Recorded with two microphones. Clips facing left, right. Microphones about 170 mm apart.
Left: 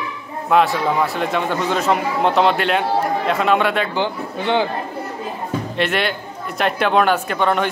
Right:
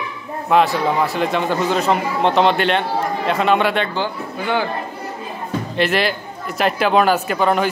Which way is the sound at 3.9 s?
20° left (ahead or behind).